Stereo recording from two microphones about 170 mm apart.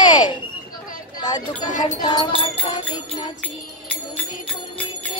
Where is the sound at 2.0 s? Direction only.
25° left (ahead or behind).